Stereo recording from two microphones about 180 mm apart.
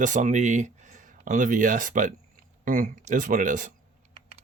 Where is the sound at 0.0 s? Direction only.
45° right (ahead or behind).